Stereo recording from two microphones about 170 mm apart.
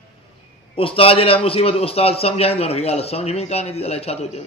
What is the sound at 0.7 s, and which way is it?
A man's voice, 30° left (ahead or behind).